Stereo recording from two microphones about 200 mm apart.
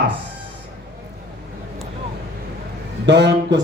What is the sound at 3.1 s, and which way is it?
Speech, 60° right (ahead or behind).